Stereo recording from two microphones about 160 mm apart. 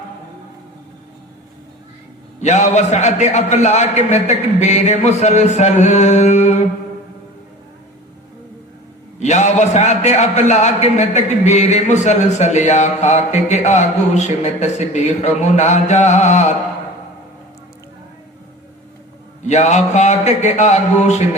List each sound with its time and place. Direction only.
2.4 s a man's voice: 45° left (ahead or behind)
9.1 s a man's voice: 45° left (ahead or behind)
19.5 s a man's voice: 45° left (ahead or behind)